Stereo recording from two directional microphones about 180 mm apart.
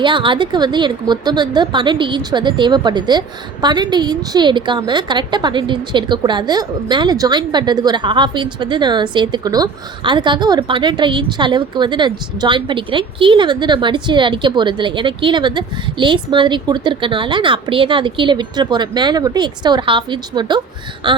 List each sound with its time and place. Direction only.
0.0 s a woman's voice: 25° right (ahead or behind)